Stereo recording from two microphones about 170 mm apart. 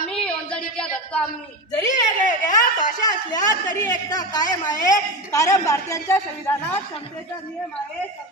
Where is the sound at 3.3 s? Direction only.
25° left (ahead or behind).